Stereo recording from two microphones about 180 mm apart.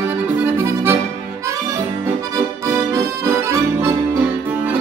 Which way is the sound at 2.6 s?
15° right (ahead or behind).